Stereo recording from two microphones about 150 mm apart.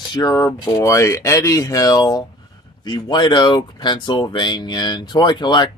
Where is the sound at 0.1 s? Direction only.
25° left (ahead or behind).